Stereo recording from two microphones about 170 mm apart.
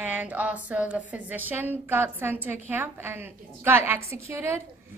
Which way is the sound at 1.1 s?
10° right (ahead or behind).